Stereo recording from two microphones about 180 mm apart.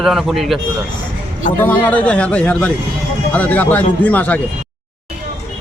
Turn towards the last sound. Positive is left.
turn(degrees=10)  # may be behind; listen again after turning